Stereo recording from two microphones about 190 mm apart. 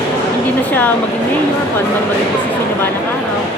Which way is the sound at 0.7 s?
10° left (ahead or behind).